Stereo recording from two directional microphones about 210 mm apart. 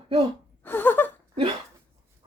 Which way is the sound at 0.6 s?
10° left (ahead or behind).